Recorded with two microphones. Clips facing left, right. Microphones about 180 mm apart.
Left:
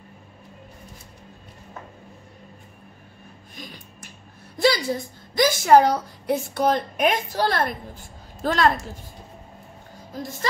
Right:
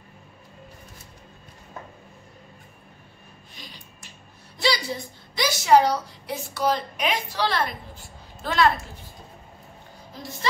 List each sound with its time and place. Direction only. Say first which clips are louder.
3.5 s music: left 6 dB; 50° left (ahead or behind)
4.6 s a woman's voice: left 5 dB; 50° left (ahead or behind)